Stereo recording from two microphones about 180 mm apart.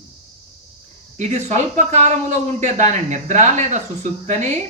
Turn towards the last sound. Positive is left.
turn(degrees=-40)  # may be behind; listen again after turning